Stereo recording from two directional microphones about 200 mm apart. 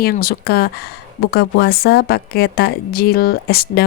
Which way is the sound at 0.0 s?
50° left (ahead or behind).